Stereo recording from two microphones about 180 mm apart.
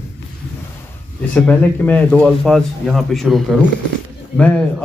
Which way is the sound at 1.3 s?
10° left (ahead or behind).